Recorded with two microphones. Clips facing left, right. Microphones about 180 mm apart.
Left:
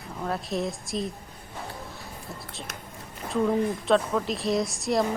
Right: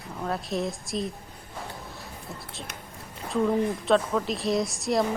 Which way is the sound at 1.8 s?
Centre (ahead or behind).